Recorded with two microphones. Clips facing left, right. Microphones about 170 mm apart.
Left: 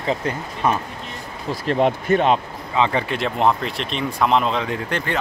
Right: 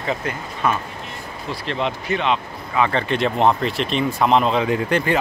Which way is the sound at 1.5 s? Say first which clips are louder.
Left 6 dB; 45° left (ahead or behind).